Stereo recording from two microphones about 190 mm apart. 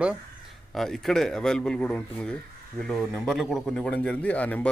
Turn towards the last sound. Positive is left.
turn(degrees=10)  # may be behind; listen again after turning